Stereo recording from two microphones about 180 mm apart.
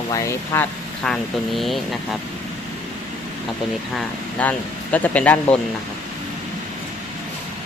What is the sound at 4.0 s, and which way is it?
Speech, 10° left (ahead or behind).